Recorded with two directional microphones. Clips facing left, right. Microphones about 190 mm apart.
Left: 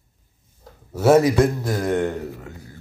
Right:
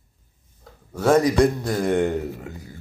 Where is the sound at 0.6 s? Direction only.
5° left (ahead or behind).